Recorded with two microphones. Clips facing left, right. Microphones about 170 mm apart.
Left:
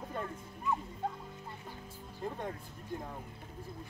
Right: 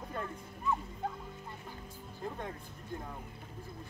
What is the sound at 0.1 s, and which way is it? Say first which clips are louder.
Speech: right 1 dB; 5° left (ahead or behind).